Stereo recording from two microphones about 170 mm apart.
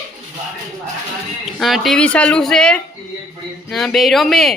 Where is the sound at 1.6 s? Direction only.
Centre (ahead or behind).